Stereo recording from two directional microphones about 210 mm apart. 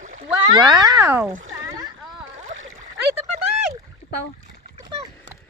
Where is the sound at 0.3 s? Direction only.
15° right (ahead or behind).